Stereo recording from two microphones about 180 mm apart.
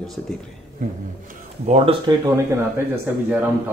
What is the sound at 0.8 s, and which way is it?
Speech, 50° right (ahead or behind).